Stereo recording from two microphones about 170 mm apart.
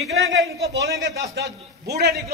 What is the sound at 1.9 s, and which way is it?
Speech, 75° right (ahead or behind).